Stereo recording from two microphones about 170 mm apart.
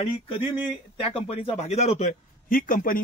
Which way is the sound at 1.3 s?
35° left (ahead or behind).